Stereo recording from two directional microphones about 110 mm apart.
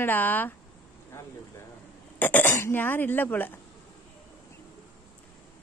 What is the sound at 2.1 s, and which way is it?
A woman's voice, 15° left (ahead or behind).